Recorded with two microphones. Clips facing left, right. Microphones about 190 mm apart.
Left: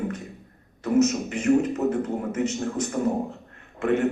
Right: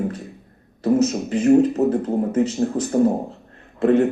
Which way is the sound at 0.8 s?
35° right (ahead or behind).